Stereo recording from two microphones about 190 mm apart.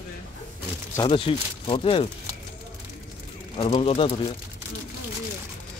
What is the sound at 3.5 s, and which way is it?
Speech, 30° left (ahead or behind).